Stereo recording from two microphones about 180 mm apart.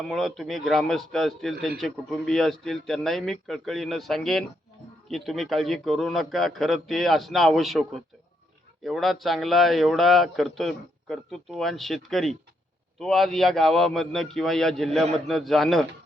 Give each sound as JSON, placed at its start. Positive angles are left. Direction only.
{"t": 0.0, "sound": "a man's voice", "side_deg": 0}